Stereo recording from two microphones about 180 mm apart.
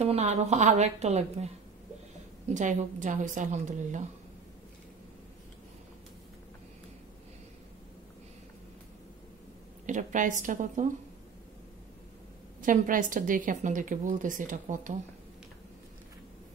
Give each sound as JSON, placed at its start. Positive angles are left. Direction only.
{"t": 0.0, "sound": "a woman's voice", "side_deg": -35}
{"t": 2.5, "sound": "a woman's voice", "side_deg": -45}
{"t": 9.8, "sound": "a woman's voice", "side_deg": -45}
{"t": 12.6, "sound": "a woman's voice", "side_deg": -50}